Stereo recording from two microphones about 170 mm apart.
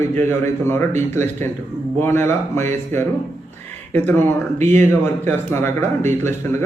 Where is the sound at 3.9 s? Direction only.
10° left (ahead or behind).